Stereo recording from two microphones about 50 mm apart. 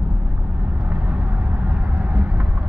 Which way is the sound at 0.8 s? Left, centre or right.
Right.